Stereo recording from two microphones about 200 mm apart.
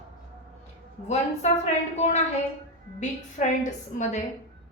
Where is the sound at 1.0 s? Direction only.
35° left (ahead or behind).